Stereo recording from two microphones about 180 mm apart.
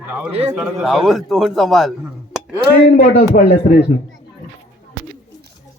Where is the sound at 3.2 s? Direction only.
50° left (ahead or behind).